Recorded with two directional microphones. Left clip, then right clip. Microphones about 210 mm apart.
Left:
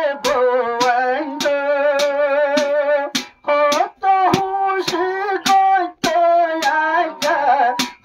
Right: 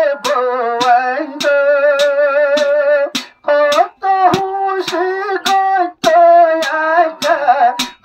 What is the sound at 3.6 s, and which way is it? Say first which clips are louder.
Child singing: right 3 dB; centre (ahead or behind).